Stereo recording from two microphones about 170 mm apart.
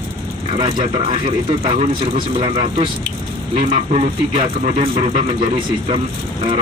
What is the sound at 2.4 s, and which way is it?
Speech, 30° right (ahead or behind).